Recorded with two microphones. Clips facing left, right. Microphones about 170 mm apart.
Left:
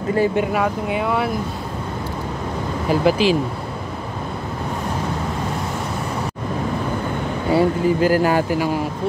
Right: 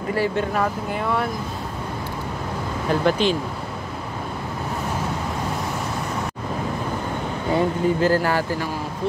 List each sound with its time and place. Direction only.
0.1 s speech: 20° left (ahead or behind)
0.5 s speech: 5° left (ahead or behind)
2.9 s speech: 5° left (ahead or behind)
7.5 s speech: 10° left (ahead or behind)